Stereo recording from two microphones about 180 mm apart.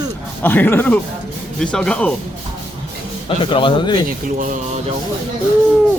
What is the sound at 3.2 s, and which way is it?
Speech, 25° left (ahead or behind).